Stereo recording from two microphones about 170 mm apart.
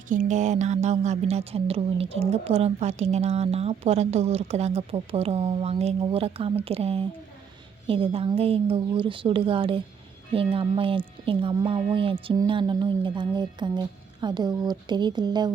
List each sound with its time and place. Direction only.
0.1 s a woman's voice: 45° right (ahead or behind); by 15.5 s 25° right (ahead or behind)